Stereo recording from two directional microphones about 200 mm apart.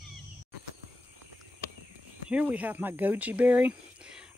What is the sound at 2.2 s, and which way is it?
Speech, 5° right (ahead or behind).